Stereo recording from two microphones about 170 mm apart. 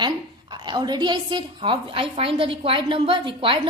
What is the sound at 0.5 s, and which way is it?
A woman's voice, 25° right (ahead or behind).